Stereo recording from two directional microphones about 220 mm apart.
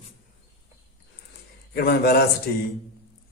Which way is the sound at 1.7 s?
45° left (ahead or behind).